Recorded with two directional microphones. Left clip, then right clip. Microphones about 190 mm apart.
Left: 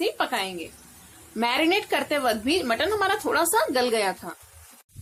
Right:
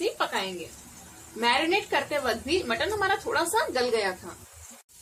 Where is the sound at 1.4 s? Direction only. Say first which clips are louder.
Left 1 dB; 60° left (ahead or behind).